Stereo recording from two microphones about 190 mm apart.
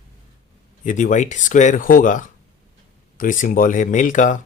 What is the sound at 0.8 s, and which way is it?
Speech, 40° left (ahead or behind).